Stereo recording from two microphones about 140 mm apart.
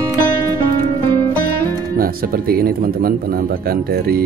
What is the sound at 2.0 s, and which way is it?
Speech, 90° right.